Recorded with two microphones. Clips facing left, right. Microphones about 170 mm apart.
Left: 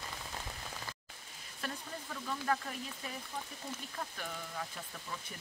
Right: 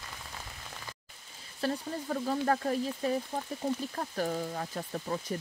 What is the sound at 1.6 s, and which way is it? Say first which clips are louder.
Speech: right 10 dB; 40° right (ahead or behind).